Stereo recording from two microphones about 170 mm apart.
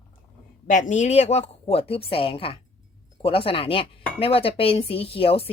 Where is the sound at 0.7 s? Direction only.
45° left (ahead or behind).